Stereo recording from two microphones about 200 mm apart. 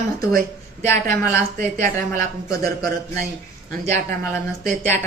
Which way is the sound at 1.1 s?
15° left (ahead or behind).